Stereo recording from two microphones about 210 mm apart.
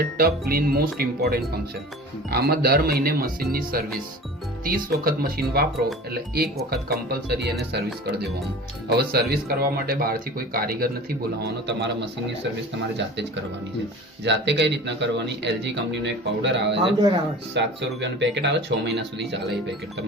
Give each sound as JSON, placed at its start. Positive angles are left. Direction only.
{"t": 0.2, "sound": "speech", "side_deg": -45}
{"t": 6.7, "sound": "speech", "side_deg": -50}
{"t": 8.9, "sound": "speech", "side_deg": -50}